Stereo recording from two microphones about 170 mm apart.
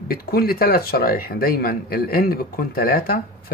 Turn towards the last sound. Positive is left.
turn(degrees=60)  # may be behind; listen again after turning